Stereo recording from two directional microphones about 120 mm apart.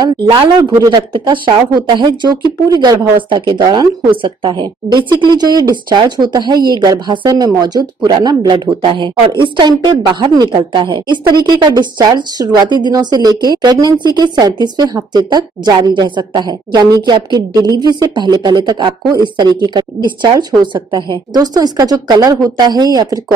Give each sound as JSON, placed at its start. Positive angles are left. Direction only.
{"t": 0.0, "sound": "speech", "side_deg": -35}